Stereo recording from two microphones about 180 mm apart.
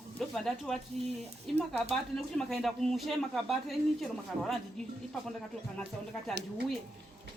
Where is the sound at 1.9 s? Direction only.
Centre (ahead or behind).